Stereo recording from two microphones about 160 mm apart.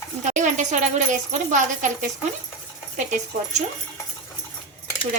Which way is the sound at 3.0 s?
50° right (ahead or behind).